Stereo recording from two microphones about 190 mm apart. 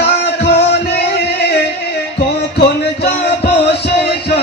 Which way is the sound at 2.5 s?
55° left (ahead or behind).